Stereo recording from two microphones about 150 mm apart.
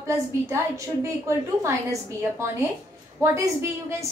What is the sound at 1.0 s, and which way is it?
Speech, 20° right (ahead or behind).